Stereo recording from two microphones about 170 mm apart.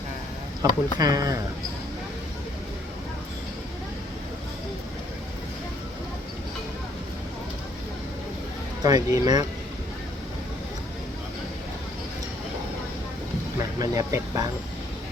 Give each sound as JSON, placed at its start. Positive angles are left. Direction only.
{"t": 0.6, "sound": "speech", "side_deg": -20}
{"t": 8.8, "sound": "speech", "side_deg": -20}
{"t": 13.7, "sound": "speech", "side_deg": -20}